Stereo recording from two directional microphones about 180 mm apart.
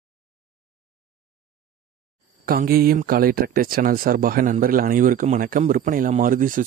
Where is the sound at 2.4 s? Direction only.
55° right (ahead or behind).